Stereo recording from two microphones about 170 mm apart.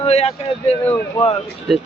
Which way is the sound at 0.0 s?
35° left (ahead or behind).